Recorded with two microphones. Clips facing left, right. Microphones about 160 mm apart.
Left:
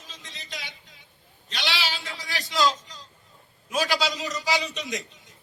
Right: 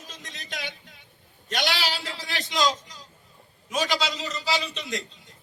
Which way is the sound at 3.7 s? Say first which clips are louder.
Left 1 dB; 10° left (ahead or behind).